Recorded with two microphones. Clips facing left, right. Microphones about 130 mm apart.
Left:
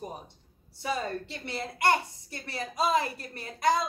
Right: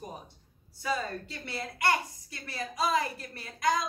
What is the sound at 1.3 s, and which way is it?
A woman's voice, 25° left (ahead or behind).